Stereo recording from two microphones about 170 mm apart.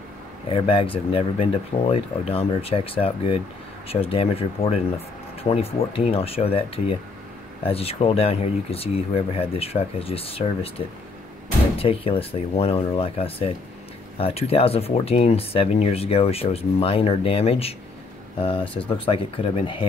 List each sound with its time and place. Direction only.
0.5 s speech: 35° left (ahead or behind)
11.7 s speech: 35° left (ahead or behind)